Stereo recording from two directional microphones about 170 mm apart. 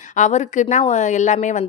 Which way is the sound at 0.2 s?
45° left (ahead or behind).